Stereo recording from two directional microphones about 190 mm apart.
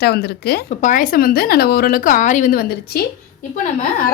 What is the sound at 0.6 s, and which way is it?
A woman's voice, 45° left (ahead or behind).